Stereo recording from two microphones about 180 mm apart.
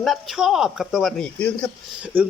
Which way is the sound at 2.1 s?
10° right (ahead or behind).